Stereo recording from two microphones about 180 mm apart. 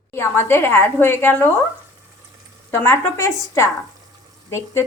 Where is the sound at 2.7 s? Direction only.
15° left (ahead or behind).